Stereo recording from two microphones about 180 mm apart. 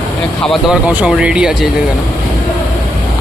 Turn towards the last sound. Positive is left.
turn(degrees=-5)  # may be behind; listen again after turning